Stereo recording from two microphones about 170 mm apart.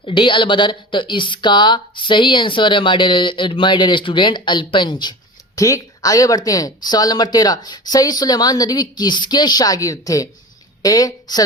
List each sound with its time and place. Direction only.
0.0 s a woman's voice: 30° left (ahead or behind)